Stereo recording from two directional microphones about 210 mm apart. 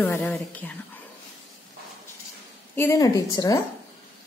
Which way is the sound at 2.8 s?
15° left (ahead or behind).